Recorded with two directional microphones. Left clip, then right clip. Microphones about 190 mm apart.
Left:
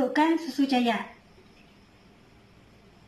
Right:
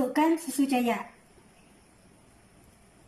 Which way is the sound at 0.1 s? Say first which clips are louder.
Left 1 dB; 25° right (ahead or behind).